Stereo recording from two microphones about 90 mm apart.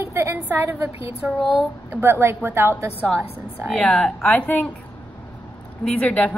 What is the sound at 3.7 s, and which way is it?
A woman's voice, 10° left (ahead or behind).